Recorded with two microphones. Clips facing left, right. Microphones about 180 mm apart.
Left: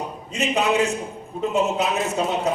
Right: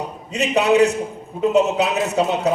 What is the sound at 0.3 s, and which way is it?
A man's voice, 65° right (ahead or behind).